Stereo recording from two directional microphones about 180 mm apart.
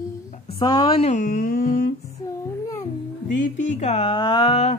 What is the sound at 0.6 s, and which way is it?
Speech, 25° left (ahead or behind).